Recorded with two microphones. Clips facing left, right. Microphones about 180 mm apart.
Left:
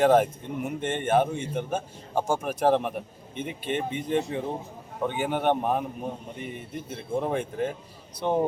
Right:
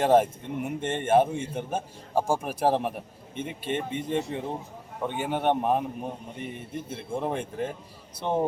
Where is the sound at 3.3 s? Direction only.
Centre (ahead or behind).